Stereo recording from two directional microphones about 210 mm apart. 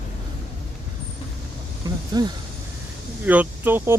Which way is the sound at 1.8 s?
20° right (ahead or behind).